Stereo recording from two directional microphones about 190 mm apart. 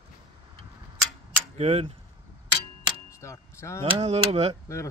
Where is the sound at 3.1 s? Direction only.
15° left (ahead or behind).